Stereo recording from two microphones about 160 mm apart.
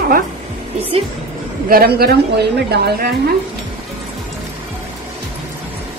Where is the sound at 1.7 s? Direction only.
70° right (ahead or behind).